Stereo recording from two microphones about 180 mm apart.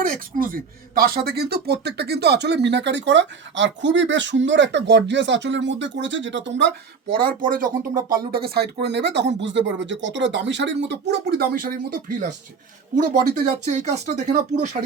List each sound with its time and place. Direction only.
0.0 s speech: 50° right (ahead or behind); by 6.7 s 90° right
7.1 s speech: 50° right (ahead or behind)
13.3 s speech: 45° right (ahead or behind)